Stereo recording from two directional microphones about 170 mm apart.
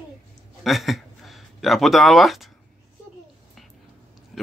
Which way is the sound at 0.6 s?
Centre (ahead or behind).